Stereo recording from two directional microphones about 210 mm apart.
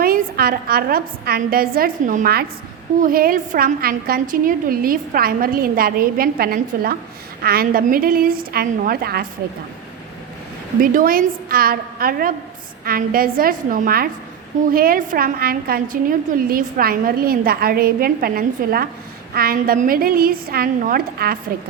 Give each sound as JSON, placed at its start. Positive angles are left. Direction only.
{"t": 0.0, "sound": "a woman's voice", "side_deg": -45}
{"t": 10.8, "sound": "a woman's voice", "side_deg": -45}